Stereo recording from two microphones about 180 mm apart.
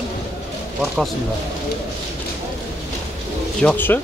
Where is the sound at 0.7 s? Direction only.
Centre (ahead or behind).